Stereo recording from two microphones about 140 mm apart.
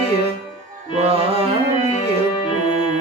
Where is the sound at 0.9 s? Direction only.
45° right (ahead or behind).